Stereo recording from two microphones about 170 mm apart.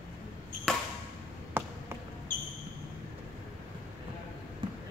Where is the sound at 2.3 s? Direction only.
55° left (ahead or behind).